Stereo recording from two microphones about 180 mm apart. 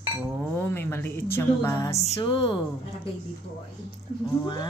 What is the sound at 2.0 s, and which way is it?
Speech, 35° left (ahead or behind).